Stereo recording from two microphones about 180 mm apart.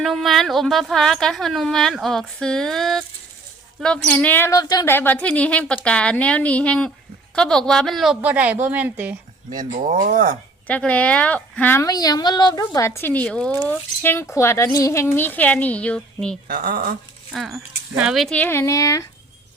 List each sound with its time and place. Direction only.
0.0 s a woman's voice: centre (ahead or behind)
9.6 s speech: 45° right (ahead or behind)
10.7 s speech: 5° left (ahead or behind)
16.5 s speech: 55° right (ahead or behind)
17.3 s speech: centre (ahead or behind); by 19.0 s 20° left (ahead or behind)